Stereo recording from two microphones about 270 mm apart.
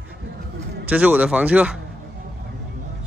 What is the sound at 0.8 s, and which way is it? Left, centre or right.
Speech, centre.